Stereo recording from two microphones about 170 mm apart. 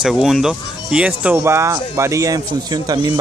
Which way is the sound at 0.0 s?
Centre (ahead or behind).